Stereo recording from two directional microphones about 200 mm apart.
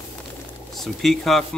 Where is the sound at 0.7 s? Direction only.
Centre (ahead or behind).